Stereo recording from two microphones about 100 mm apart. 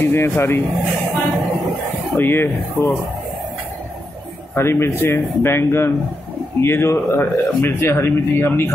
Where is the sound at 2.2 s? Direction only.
20° left (ahead or behind).